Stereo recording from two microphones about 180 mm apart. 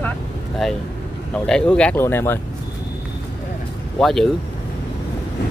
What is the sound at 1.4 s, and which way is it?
Speech, 5° left (ahead or behind).